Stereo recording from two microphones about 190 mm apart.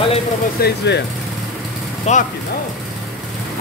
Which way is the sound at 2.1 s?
35° left (ahead or behind).